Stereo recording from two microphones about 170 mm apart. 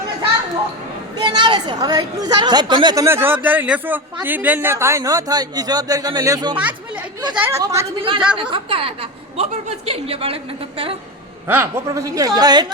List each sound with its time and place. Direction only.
1.2 s a woman's voice: 25° right (ahead or behind)
7.9 s a woman's voice: 30° right (ahead or behind)
11.4 s a woman's voice: 15° right (ahead or behind)